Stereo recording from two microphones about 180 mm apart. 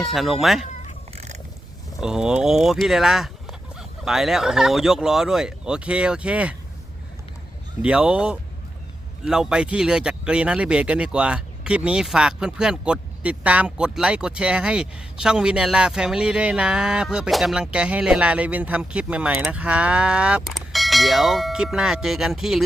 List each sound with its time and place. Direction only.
0.0 s speech: centre (ahead or behind)
1.1 s a sound: 35° right (ahead or behind)
2.0 s speech: 5° right (ahead or behind)
7.8 s speech: 5° right (ahead or behind)